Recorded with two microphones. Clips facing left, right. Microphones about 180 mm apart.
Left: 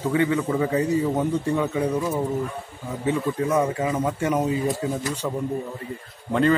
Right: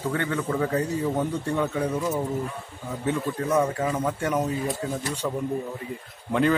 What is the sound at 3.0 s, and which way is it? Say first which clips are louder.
Speech: left 3 dB; centre (ahead or behind).